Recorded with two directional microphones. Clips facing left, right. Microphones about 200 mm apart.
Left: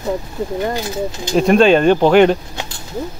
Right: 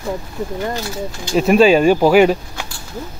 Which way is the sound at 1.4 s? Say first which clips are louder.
Even; 5° right (ahead or behind).